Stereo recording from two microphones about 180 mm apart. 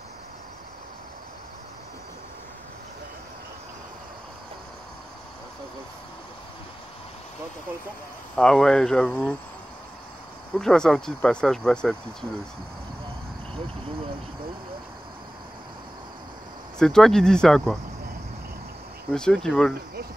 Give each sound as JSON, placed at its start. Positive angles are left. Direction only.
{"t": 8.4, "sound": "speech", "side_deg": 5}
{"t": 10.5, "sound": "speech", "side_deg": 5}
{"t": 16.7, "sound": "speech", "side_deg": 5}
{"t": 19.1, "sound": "speech", "side_deg": 5}